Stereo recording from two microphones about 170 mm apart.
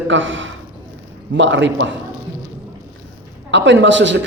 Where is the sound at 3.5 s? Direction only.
90° right.